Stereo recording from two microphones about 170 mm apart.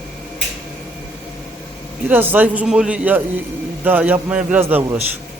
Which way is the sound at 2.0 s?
10° right (ahead or behind).